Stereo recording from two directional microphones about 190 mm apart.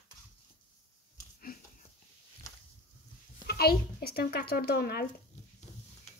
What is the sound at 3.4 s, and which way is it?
Speech, 55° left (ahead or behind).